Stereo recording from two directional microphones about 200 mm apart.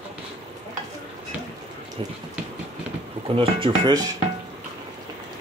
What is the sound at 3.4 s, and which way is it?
Speech, 25° right (ahead or behind).